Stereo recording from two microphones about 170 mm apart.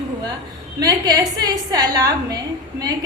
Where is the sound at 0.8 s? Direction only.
25° right (ahead or behind).